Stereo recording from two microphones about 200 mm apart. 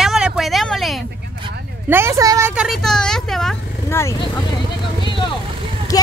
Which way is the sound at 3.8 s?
15° left (ahead or behind).